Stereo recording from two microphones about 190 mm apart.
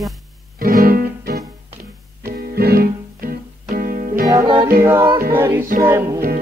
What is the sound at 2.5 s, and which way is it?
Music, 55° right (ahead or behind).